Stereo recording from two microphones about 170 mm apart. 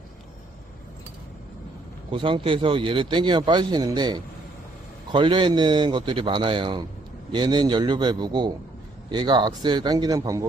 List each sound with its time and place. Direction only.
2.0 s speech: 30° right (ahead or behind)